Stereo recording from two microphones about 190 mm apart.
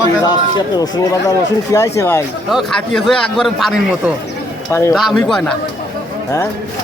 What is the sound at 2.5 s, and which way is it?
A man's voice, centre (ahead or behind).